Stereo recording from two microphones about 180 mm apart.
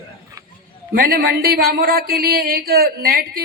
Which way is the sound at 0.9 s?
55° right (ahead or behind).